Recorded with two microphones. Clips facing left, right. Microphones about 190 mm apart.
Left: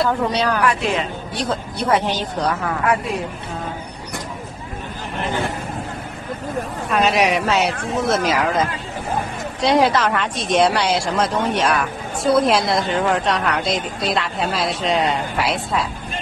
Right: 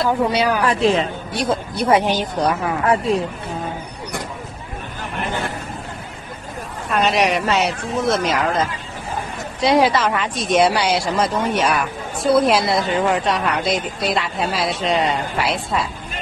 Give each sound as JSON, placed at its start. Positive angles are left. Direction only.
{"t": 0.3, "sound": "a woman's voice", "side_deg": -10}
{"t": 0.7, "sound": "a woman's voice", "side_deg": -30}
{"t": 1.4, "sound": "a woman's voice", "side_deg": -15}
{"t": 2.8, "sound": "a woman's voice", "side_deg": -30}
{"t": 6.9, "sound": "speech", "side_deg": 0}
{"t": 9.6, "sound": "speech", "side_deg": 0}